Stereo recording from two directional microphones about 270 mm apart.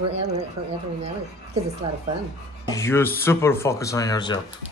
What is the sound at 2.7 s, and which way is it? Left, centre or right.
Speech, centre.